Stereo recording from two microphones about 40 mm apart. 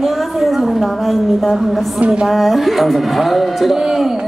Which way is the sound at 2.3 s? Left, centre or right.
Centre.